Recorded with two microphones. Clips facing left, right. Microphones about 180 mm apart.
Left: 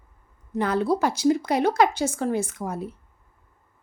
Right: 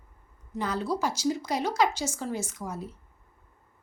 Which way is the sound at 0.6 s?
60° left (ahead or behind).